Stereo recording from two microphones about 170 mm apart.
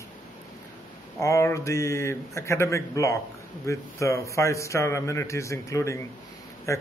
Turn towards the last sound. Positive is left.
turn(degrees=15)  # may be behind; listen again after turning